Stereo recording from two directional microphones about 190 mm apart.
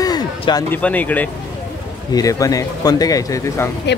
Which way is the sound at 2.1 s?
20° left (ahead or behind).